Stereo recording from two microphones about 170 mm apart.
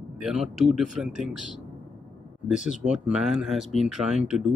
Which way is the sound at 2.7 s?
5° right (ahead or behind).